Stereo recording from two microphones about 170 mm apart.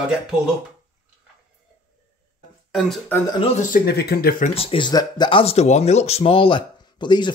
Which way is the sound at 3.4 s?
45° left (ahead or behind).